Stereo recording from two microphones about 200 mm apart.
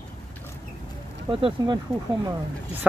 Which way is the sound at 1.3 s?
25° right (ahead or behind).